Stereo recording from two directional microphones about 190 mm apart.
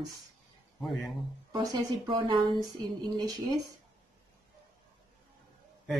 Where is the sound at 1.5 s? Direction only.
20° right (ahead or behind).